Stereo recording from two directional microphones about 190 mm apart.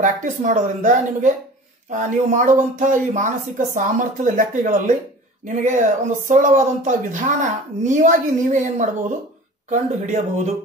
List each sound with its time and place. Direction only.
0.0 s speech: 40° right (ahead or behind)